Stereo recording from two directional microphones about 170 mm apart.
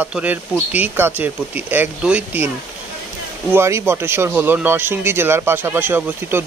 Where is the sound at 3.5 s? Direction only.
15° right (ahead or behind).